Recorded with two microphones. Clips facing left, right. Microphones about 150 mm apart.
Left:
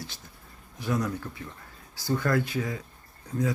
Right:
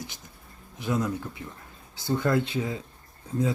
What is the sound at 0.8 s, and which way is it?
Speech, 20° right (ahead or behind).